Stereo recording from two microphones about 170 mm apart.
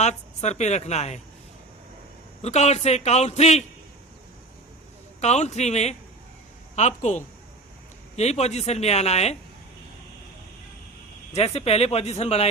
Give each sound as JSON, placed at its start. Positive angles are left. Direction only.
{"t": 0.0, "sound": "speech", "side_deg": 40}
{"t": 2.4, "sound": "speech", "side_deg": 40}
{"t": 5.2, "sound": "a woman's voice", "side_deg": 40}
{"t": 11.3, "sound": "speech", "side_deg": 40}